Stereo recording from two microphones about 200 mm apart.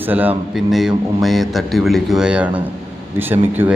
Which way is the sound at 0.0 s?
10° right (ahead or behind).